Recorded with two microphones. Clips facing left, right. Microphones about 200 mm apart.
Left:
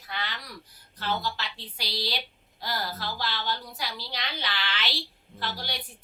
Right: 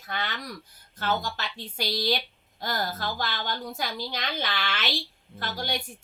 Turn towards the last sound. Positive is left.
turn(degrees=-50)  # may be behind; listen again after turning